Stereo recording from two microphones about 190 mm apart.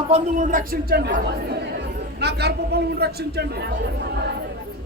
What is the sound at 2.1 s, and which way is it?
A man's voice, 60° right (ahead or behind).